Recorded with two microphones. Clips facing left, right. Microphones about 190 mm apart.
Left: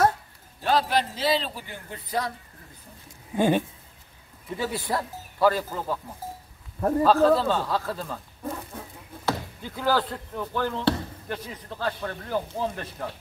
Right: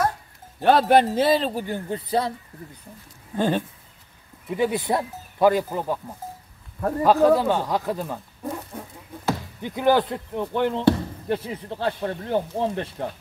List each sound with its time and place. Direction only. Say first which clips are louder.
0.6 s a man's voice: right 7 dB; 60° right (ahead or behind)
1.9 s speech: right 3 dB; 30° right (ahead or behind)
3.3 s speech: left 1 dB; 10° left (ahead or behind)
4.5 s speech: right 6 dB; 20° right (ahead or behind)
7.0 s speech: right 2 dB; 15° right (ahead or behind)